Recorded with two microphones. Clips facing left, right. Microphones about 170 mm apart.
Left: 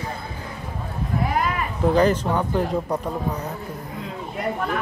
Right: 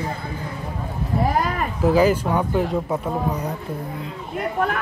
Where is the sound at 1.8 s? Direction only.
5° right (ahead or behind).